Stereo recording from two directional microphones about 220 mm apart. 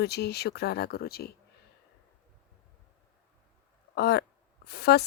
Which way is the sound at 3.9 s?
50° left (ahead or behind).